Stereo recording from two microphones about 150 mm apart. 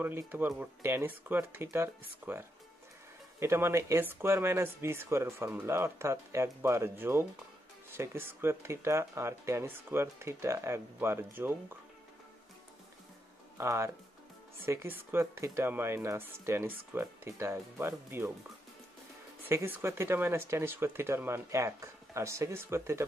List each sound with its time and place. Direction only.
0.0 s speech: 15° right (ahead or behind)
13.6 s speech: 20° right (ahead or behind)
19.4 s speech: 15° right (ahead or behind)